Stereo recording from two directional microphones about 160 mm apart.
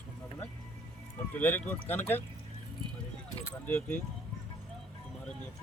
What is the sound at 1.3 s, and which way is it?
Speech, 10° left (ahead or behind).